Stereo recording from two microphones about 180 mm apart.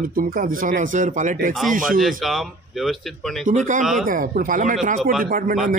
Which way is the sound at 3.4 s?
45° right (ahead or behind).